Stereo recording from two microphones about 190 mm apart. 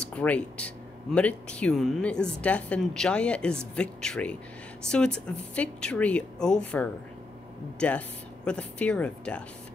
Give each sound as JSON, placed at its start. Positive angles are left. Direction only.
{"t": 0.0, "sound": "speech", "side_deg": 5}